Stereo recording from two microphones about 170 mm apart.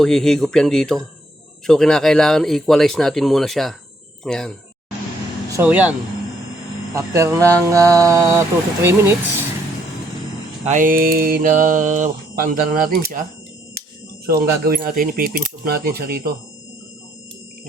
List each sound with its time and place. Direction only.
0.0 s speech: 5° left (ahead or behind)
5.5 s speech: 10° right (ahead or behind)
6.9 s speech: 15° right (ahead or behind)
10.7 s mantra: 50° right (ahead or behind)
14.3 s speech: 60° right (ahead or behind)